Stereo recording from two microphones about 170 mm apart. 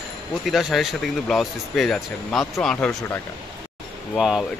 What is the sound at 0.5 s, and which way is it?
Speech, centre (ahead or behind).